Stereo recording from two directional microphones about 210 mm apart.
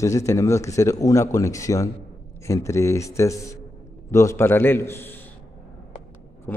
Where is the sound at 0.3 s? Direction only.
15° left (ahead or behind).